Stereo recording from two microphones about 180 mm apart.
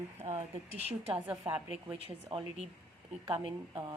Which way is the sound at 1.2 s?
15° right (ahead or behind).